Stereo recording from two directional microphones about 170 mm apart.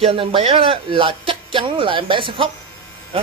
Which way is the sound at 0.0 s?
30° right (ahead or behind).